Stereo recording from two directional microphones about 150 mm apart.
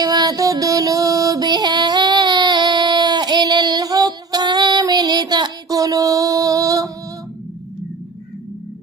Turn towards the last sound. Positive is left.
turn(degrees=-25)  # may be behind; listen again after turning